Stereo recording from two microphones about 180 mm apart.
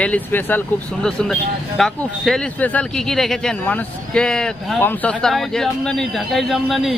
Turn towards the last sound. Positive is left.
turn(degrees=0)  # may be behind; listen again after turning